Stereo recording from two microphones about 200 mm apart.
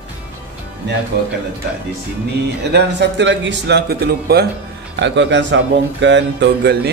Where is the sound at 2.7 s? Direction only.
60° right (ahead or behind).